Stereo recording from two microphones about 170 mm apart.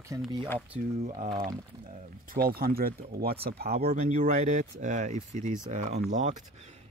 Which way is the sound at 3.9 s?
45° right (ahead or behind).